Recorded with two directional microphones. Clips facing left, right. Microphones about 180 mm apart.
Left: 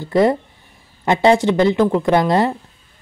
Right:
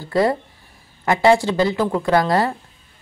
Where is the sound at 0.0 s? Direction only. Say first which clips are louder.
Left 3 dB; 20° left (ahead or behind).